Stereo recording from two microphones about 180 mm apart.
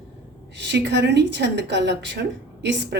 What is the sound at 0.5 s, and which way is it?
A woman's voice, 75° right (ahead or behind).